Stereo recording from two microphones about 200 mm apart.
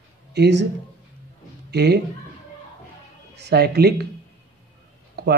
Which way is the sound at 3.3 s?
55° right (ahead or behind).